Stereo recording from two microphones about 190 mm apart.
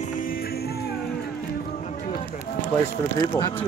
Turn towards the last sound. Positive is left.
turn(degrees=15)  # may be behind; listen again after turning